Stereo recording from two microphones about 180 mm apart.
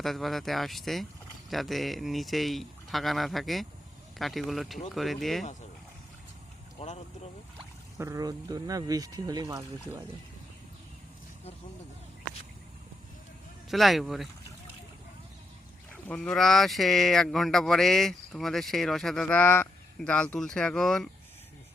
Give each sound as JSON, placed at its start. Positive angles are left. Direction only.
{"t": 0.0, "sound": "speech", "side_deg": 0}
{"t": 6.7, "sound": "speech", "side_deg": 35}
{"t": 7.9, "sound": "speech", "side_deg": -15}
{"t": 13.7, "sound": "speech", "side_deg": 0}
{"t": 16.0, "sound": "speech", "side_deg": 5}